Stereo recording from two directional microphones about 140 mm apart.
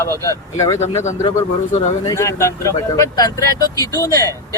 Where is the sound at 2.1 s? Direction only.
20° left (ahead or behind).